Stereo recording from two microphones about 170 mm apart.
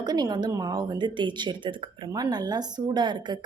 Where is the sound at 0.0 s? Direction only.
25° right (ahead or behind).